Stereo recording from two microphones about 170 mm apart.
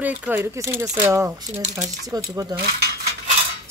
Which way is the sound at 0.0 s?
10° right (ahead or behind).